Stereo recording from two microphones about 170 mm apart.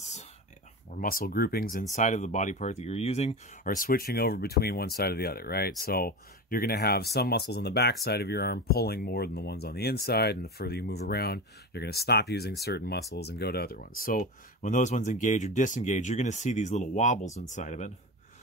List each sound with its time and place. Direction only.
0.0 s a sound: 40° left (ahead or behind)
0.9 s speech: 60° left (ahead or behind); by 3.3 s 40° left (ahead or behind)
3.6 s speech: 55° left (ahead or behind)